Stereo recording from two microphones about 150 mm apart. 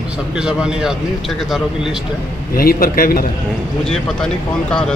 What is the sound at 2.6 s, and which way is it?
Speech, 80° left.